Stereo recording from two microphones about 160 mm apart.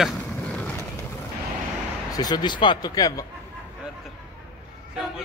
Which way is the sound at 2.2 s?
25° left (ahead or behind).